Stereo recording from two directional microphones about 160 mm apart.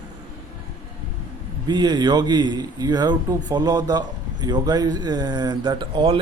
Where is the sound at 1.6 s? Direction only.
25° right (ahead or behind).